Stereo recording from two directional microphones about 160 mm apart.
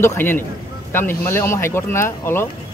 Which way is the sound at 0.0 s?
15° left (ahead or behind).